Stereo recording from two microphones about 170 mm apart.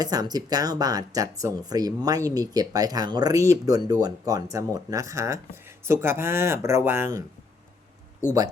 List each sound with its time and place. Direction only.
0.0 s speech: 20° right (ahead or behind)
8.2 s speech: 50° left (ahead or behind)